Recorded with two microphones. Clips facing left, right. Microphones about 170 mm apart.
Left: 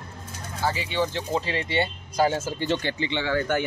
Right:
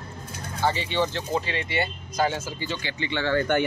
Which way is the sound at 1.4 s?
35° left (ahead or behind).